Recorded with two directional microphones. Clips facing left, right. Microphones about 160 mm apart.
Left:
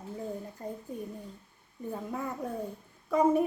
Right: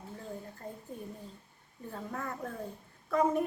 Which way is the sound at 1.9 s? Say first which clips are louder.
Left 3 dB; 10° left (ahead or behind).